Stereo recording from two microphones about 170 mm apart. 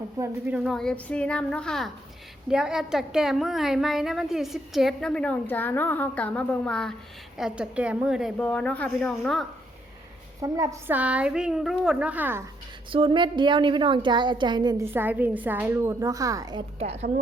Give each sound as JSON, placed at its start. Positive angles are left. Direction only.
{"t": 0.2, "sound": "a woman's voice", "side_deg": -10}
{"t": 8.4, "sound": "speech", "side_deg": 5}
{"t": 10.4, "sound": "a child's voice", "side_deg": -20}
{"t": 12.9, "sound": "a woman's voice", "side_deg": -30}
{"t": 14.9, "sound": "a child's voice", "side_deg": -10}
{"t": 16.7, "sound": "a woman's voice", "side_deg": -40}